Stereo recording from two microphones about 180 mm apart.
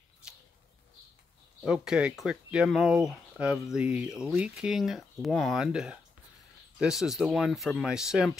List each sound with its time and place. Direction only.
1.6 s speech: 5° right (ahead or behind)